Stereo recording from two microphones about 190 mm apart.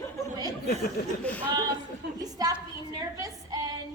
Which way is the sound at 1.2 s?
5° left (ahead or behind).